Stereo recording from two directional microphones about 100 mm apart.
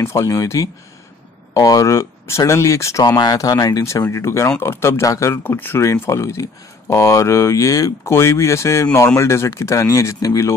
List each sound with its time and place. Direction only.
0.0 s speech: 30° left (ahead or behind)